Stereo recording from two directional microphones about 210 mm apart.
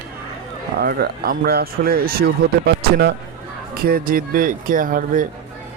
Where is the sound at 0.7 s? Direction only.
50° right (ahead or behind).